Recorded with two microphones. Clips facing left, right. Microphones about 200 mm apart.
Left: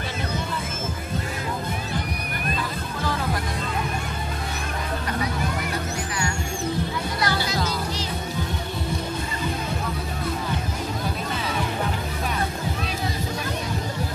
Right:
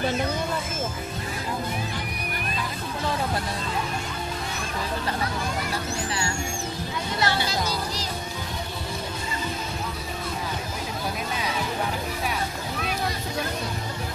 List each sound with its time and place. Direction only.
7.2 s music: 25° right (ahead or behind)